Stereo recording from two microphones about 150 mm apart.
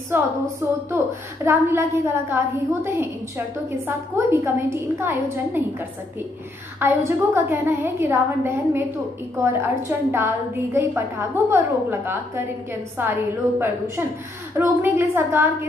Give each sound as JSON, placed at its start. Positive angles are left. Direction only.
{"t": 0.1, "sound": "a woman's voice", "side_deg": -15}
{"t": 6.8, "sound": "a woman's voice", "side_deg": -15}